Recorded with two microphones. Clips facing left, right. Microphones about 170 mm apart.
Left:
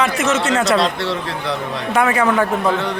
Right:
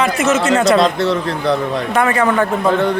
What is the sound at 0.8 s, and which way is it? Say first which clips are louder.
Speech: right 5 dB; 45° right (ahead or behind).